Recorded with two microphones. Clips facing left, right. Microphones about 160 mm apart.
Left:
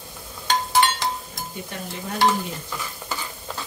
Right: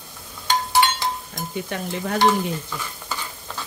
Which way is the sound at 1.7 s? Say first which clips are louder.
Right 6 dB; 70° right (ahead or behind).